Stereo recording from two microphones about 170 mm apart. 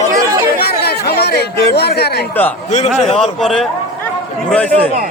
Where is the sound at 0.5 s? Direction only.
65° left (ahead or behind).